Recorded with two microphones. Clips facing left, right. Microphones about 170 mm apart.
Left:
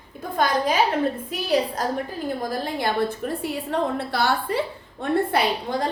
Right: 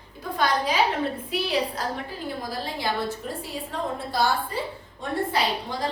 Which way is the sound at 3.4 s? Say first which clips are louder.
Left 6 dB; 65° left (ahead or behind).